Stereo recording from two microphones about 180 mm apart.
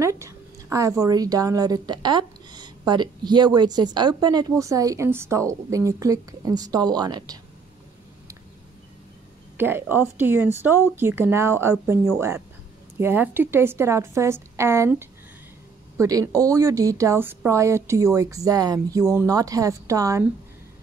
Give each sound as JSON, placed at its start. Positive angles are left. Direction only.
{"t": 0.0, "sound": "a woman's voice", "side_deg": -15}
{"t": 9.6, "sound": "a woman's voice", "side_deg": -10}